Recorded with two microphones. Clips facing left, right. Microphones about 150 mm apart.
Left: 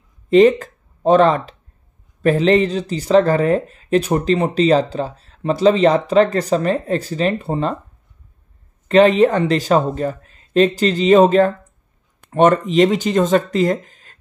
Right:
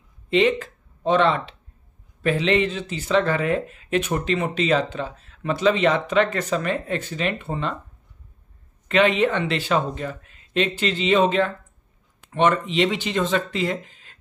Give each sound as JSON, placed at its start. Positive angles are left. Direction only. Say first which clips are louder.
{"t": 0.3, "sound": "speech", "louder": "left 8 dB", "side_deg": 40}
{"t": 8.8, "sound": "speech", "louder": "left 7 dB", "side_deg": 35}